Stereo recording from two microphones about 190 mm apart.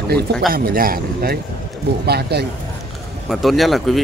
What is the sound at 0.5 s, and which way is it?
Speech, 50° right (ahead or behind).